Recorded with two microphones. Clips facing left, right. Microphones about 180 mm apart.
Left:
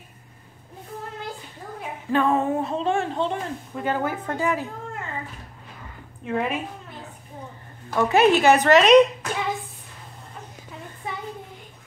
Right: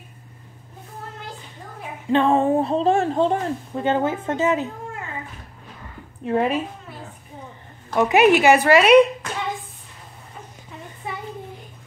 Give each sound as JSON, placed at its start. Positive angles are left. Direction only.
{"t": 2.0, "sound": "a woman's voice", "side_deg": -25}
{"t": 3.8, "sound": "a woman's voice", "side_deg": -25}
{"t": 6.2, "sound": "a woman's voice", "side_deg": -35}
{"t": 7.9, "sound": "speech", "side_deg": -15}